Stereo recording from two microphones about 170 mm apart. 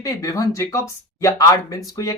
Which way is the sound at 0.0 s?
20° left (ahead or behind).